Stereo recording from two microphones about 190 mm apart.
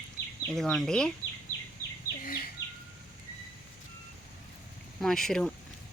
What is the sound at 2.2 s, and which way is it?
Bird, 50° left (ahead or behind).